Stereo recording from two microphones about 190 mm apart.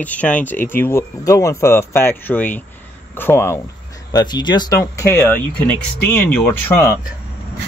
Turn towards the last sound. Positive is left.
turn(degrees=15)  # may be behind; listen again after turning